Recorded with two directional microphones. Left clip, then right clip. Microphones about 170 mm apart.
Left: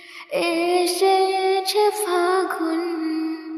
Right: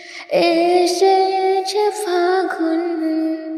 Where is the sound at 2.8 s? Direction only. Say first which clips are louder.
Right 5 dB; centre (ahead or behind).